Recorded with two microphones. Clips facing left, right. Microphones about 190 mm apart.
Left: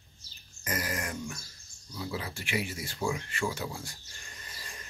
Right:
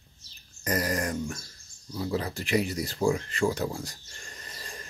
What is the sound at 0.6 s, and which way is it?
Speech, 35° right (ahead or behind).